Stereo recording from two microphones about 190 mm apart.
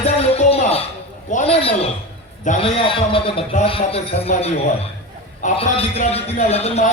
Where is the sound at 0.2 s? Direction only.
30° left (ahead or behind).